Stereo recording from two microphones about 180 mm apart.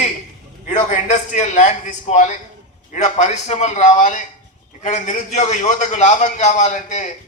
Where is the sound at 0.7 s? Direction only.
45° left (ahead or behind).